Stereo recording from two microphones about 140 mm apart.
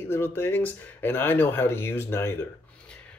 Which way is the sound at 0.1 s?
15° left (ahead or behind).